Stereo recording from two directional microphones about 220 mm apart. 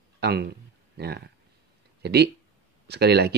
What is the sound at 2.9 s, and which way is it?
Speech, 45° right (ahead or behind).